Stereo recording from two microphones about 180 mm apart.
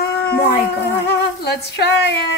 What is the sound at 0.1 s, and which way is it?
Speech, 65° left (ahead or behind).